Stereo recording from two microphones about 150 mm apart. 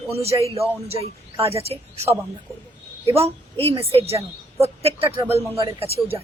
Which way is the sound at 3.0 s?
40° right (ahead or behind).